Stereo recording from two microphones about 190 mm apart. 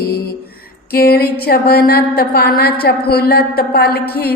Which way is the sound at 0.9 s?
55° left (ahead or behind).